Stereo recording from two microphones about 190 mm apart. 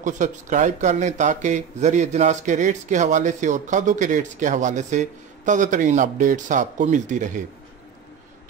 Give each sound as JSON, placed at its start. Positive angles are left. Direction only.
{"t": 0.0, "sound": "speech", "side_deg": -40}